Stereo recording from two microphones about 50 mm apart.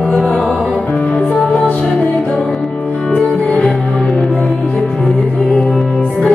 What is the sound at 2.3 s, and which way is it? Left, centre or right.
Music, centre.